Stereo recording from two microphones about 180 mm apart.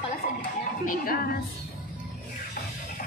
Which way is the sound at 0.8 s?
55° left (ahead or behind).